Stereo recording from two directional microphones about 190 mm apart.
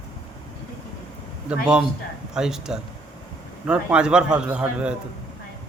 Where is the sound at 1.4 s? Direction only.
5° right (ahead or behind).